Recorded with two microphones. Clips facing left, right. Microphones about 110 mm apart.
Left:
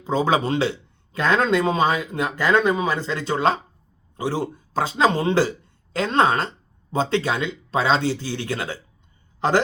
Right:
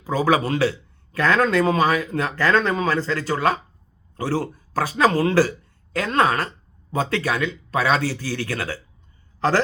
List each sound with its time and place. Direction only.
0.0 s a man's voice: 25° left (ahead or behind)